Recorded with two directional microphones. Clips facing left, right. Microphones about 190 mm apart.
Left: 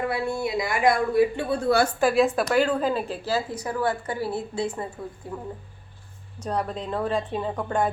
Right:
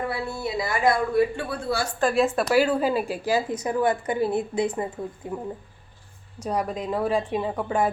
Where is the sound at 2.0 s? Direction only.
5° left (ahead or behind); by 5.4 s 15° right (ahead or behind).